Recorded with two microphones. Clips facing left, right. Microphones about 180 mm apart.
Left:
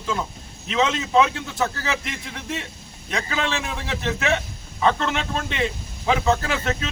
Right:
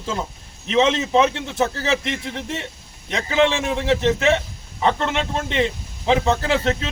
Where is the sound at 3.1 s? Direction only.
20° right (ahead or behind).